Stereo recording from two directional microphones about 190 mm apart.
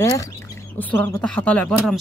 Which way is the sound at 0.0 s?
20° left (ahead or behind).